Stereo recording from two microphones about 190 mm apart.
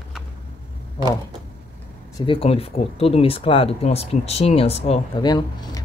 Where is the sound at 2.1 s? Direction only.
25° left (ahead or behind).